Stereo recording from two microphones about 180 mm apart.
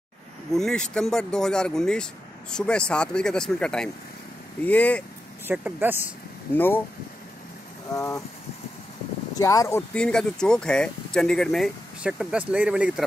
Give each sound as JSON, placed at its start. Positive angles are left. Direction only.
{"t": 0.5, "sound": "speech", "side_deg": 5}
{"t": 5.5, "sound": "speech", "side_deg": -10}
{"t": 6.5, "sound": "speech", "side_deg": 10}
{"t": 7.9, "sound": "speech", "side_deg": 20}
{"t": 9.3, "sound": "speech", "side_deg": 20}